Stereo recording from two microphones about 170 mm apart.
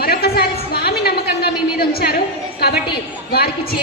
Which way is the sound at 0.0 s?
65° left (ahead or behind).